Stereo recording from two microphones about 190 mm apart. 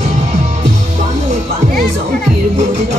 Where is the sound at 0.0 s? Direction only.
35° right (ahead or behind).